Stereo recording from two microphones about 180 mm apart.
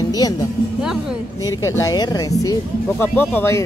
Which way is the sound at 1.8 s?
20° left (ahead or behind).